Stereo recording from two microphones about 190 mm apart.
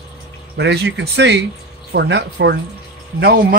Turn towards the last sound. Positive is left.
turn(degrees=-55)  # may be behind; listen again after turning